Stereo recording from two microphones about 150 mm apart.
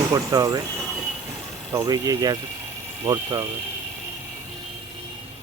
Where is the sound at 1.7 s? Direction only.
25° right (ahead or behind).